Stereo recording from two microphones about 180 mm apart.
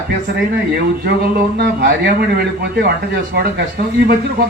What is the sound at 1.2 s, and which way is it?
Speech, 60° right (ahead or behind).